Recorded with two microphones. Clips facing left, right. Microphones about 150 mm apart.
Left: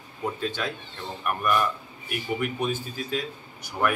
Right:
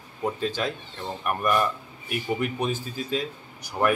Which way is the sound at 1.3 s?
35° right (ahead or behind).